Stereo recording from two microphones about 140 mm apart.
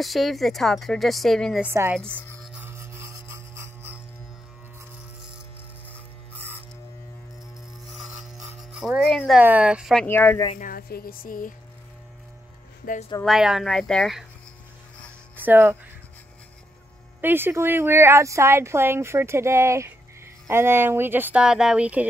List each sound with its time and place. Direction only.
0.0 s a woman's voice: centre (ahead or behind)
1.6 s speech: 15° right (ahead or behind)
2.0 s speech: 10° left (ahead or behind)
2.6 s a sound: 20° right (ahead or behind)
7.9 s a sound: centre (ahead or behind)
8.7 s a woman's voice: centre (ahead or behind)
9.4 s speech: 10° right (ahead or behind)
10.0 s speech: 15° left (ahead or behind)
10.6 s speech: 90° left
12.8 s speech: 90° left
13.2 s a woman's voice: 5° right (ahead or behind)
15.3 s speech: 15° right (ahead or behind)
17.2 s a woman's voice: 15° right (ahead or behind)